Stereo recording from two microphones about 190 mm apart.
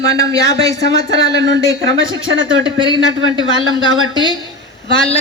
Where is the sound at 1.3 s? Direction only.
70° right (ahead or behind); by 2.4 s 90° right.